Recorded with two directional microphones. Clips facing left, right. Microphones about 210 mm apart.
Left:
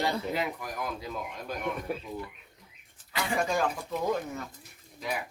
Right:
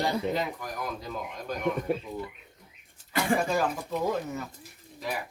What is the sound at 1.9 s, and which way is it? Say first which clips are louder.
Speech: right 5 dB; 25° right (ahead or behind).